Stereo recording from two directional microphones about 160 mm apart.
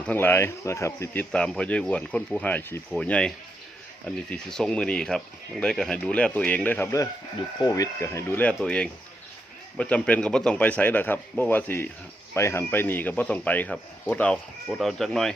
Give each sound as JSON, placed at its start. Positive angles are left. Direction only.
{"t": 0.0, "sound": "speech", "side_deg": 10}